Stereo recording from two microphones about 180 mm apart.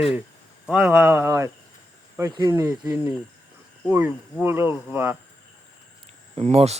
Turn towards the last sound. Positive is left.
turn(degrees=-35)  # may be behind; listen again after turning